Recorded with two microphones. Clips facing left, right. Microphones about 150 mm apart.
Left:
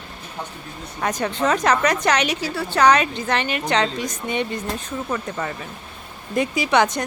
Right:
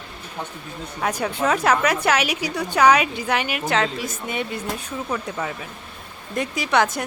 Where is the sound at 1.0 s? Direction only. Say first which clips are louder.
Left 1 dB; 10° right (ahead or behind).